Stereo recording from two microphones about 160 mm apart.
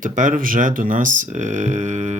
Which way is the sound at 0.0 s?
55° right (ahead or behind).